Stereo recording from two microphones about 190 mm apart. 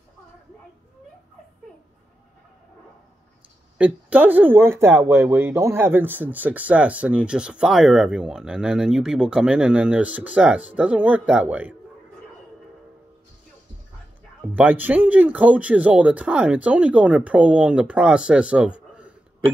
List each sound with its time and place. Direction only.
3.7 s speech: 10° right (ahead or behind)
14.4 s speech: 5° right (ahead or behind)